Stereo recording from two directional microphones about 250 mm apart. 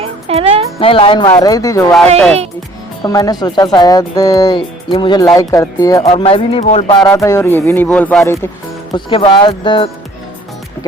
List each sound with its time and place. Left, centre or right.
0.0 s music: right
0.8 s speech: left
3.0 s speech: centre
7.0 s speech: centre
8.9 s speech: centre